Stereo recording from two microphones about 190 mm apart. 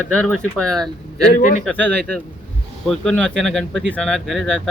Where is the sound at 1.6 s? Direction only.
5° left (ahead or behind).